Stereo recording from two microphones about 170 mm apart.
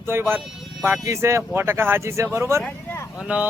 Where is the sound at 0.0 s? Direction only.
15° right (ahead or behind).